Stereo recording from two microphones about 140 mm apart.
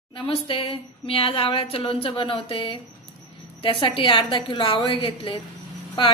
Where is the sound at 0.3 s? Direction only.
40° left (ahead or behind).